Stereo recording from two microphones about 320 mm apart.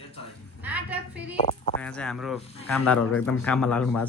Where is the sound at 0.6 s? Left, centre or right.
Centre.